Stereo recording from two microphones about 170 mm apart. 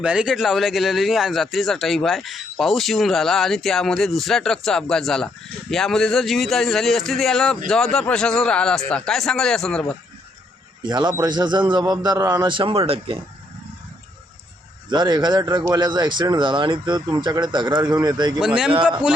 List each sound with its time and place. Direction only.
0.0 s speech: 5° right (ahead or behind)
10.8 s speech: 25° right (ahead or behind)
14.8 s speech: 25° right (ahead or behind)
18.3 s speech: 5° right (ahead or behind)